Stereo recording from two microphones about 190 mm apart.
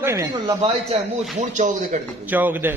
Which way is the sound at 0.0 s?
15° right (ahead or behind).